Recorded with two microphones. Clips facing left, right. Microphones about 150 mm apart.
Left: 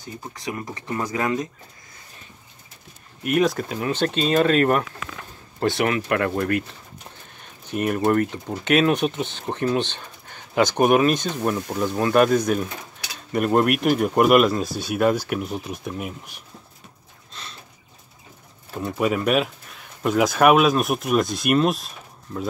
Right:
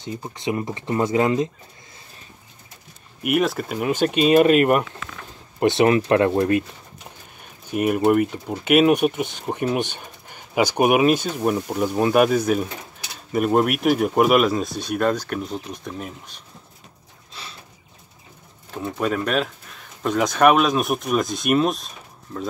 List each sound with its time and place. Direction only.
0.0 s speech: 25° right (ahead or behind)
3.2 s speech: 5° right (ahead or behind)
5.6 s speech: 25° right (ahead or behind)
7.7 s speech: 10° right (ahead or behind); by 16.3 s 10° left (ahead or behind)
17.3 s a sound: 10° right (ahead or behind)
18.7 s speech: 10° left (ahead or behind)